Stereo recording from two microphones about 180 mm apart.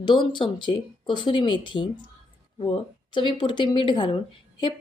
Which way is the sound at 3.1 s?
25° left (ahead or behind).